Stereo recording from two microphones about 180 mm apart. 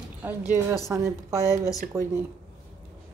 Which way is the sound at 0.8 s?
15° right (ahead or behind).